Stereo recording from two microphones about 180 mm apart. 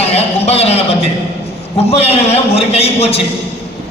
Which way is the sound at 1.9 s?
35° left (ahead or behind).